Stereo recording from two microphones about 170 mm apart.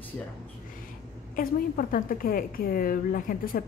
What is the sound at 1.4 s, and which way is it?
A woman's voice, 55° left (ahead or behind).